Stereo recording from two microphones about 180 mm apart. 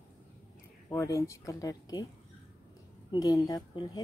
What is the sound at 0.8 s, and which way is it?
Speech, 15° left (ahead or behind).